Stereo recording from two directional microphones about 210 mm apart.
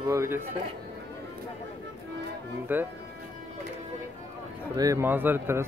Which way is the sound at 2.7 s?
10° right (ahead or behind).